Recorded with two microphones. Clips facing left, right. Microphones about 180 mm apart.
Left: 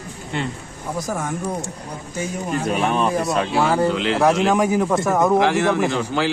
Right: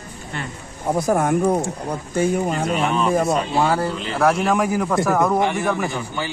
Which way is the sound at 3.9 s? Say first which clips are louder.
Left 6 dB; 90° left.